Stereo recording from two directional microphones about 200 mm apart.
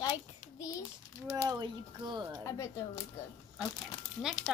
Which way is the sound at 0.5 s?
15° left (ahead or behind).